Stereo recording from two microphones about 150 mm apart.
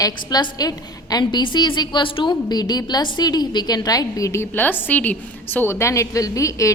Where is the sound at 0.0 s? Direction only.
30° left (ahead or behind).